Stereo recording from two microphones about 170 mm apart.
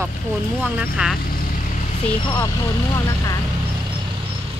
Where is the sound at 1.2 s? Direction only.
55° left (ahead or behind).